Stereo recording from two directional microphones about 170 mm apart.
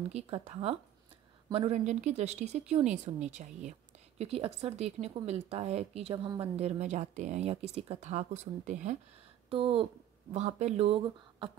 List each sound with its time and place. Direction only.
0.1 s speech: 35° right (ahead or behind)
6.1 s a woman's voice: 25° right (ahead or behind)
6.5 s speech: 40° right (ahead or behind)
9.5 s speech: 35° right (ahead or behind)